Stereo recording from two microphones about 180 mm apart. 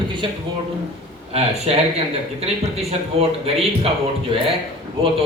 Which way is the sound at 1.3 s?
35° right (ahead or behind).